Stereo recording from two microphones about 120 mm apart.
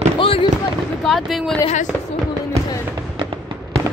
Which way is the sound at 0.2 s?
50° left (ahead or behind).